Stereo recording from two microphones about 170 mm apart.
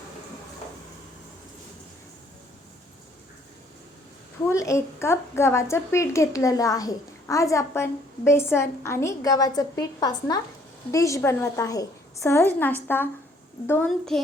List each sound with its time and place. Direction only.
4.4 s a woman's voice: 20° left (ahead or behind)